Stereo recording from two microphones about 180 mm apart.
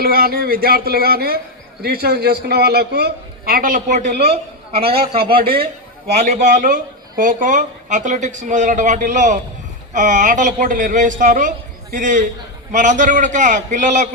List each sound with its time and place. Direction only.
0.0 s a man's voice: 55° right (ahead or behind)